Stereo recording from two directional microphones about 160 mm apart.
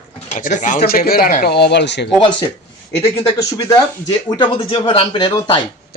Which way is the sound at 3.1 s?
20° left (ahead or behind).